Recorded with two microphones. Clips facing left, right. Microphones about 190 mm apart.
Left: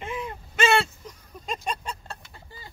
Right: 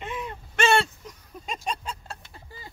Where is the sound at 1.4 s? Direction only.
5° right (ahead or behind).